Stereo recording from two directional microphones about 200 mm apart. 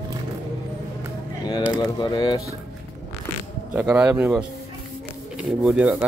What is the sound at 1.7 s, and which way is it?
Speech, 20° left (ahead or behind).